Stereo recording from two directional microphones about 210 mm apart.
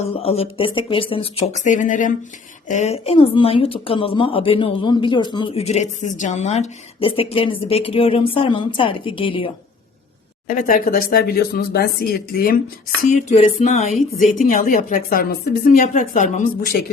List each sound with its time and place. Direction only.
0.0 s speech: 30° left (ahead or behind)
10.5 s a woman's voice: 40° left (ahead or behind)